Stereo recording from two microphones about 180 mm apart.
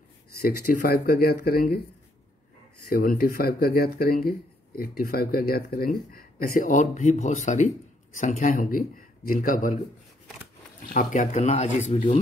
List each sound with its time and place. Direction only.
0.4 s speech: 55° left (ahead or behind)
2.9 s speech: 55° left (ahead or behind)
10.9 s speech: 45° left (ahead or behind)